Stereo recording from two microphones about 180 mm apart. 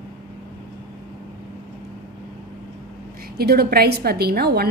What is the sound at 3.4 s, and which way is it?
Speech, 60° right (ahead or behind).